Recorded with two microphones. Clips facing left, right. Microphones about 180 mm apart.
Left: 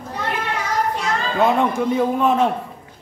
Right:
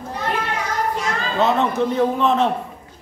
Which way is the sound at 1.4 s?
10° left (ahead or behind).